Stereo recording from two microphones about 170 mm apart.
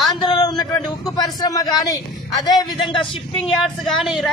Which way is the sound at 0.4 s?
25° left (ahead or behind).